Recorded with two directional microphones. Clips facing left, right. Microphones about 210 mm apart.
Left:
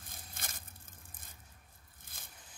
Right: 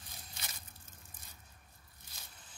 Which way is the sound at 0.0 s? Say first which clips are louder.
Left 2 dB; 50° left (ahead or behind).